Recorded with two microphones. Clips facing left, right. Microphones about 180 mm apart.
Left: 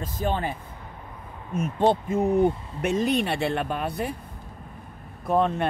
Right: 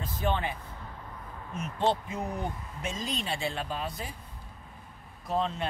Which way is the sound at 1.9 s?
50° left (ahead or behind).